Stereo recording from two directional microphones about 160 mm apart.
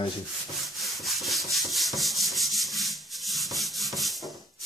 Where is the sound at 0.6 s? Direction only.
Centre (ahead or behind).